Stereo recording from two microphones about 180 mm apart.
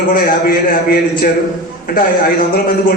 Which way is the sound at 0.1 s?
55° left (ahead or behind).